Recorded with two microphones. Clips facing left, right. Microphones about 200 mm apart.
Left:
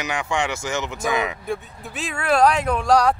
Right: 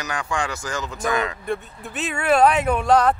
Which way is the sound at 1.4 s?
Centre (ahead or behind).